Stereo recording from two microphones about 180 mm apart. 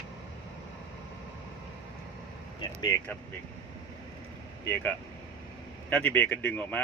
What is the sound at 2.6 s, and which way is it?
Vehicle, 15° left (ahead or behind).